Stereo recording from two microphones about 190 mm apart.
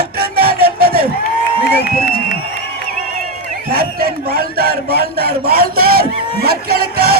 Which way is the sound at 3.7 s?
50° right (ahead or behind).